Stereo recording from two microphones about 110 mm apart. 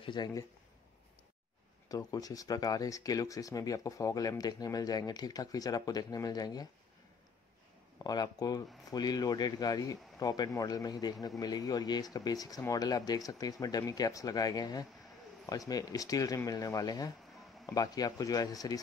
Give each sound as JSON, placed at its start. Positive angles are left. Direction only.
{"t": 0.0, "sound": "speech", "side_deg": 45}
{"t": 1.9, "sound": "speech", "side_deg": 35}
{"t": 8.0, "sound": "speech", "side_deg": 35}